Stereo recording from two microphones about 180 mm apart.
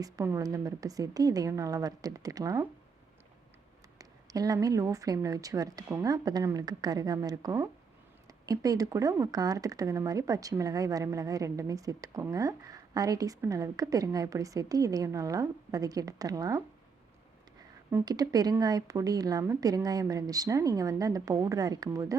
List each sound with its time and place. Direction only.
0.0 s speech: 15° right (ahead or behind)
3.9 s speech: 20° right (ahead or behind)
17.9 s speech: 20° right (ahead or behind)